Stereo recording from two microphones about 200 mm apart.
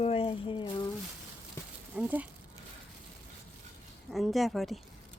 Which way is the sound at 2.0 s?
10° right (ahead or behind).